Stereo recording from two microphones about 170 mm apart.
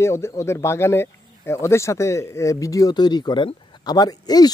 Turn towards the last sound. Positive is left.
turn(degrees=25)  # may be behind; listen again after turning